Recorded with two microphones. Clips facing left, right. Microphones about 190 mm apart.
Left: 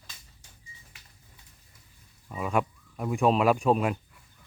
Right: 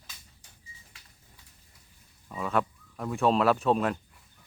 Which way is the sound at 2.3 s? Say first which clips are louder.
Left 1 dB; 10° left (ahead or behind).